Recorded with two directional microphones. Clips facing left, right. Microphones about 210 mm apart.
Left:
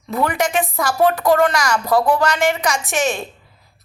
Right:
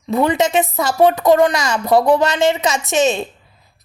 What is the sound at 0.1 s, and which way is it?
A woman's voice, 20° right (ahead or behind).